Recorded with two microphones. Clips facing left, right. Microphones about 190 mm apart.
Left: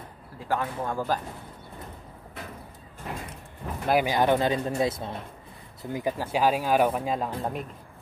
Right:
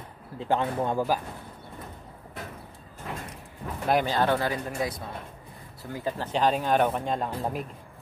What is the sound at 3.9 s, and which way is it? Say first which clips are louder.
Speech: left 2 dB; 10° left (ahead or behind).